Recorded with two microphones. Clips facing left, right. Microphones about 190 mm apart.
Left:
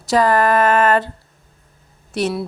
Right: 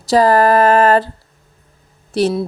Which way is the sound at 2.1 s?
30° right (ahead or behind).